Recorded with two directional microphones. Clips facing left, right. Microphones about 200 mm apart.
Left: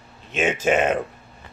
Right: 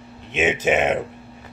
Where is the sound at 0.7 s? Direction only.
Centre (ahead or behind).